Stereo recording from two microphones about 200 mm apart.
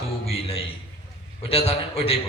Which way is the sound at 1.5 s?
30° left (ahead or behind).